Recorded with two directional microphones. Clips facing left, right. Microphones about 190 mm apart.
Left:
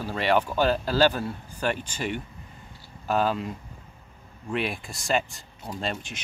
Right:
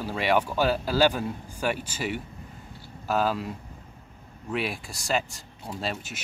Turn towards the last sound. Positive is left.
turn(degrees=-5)  # may be behind; listen again after turning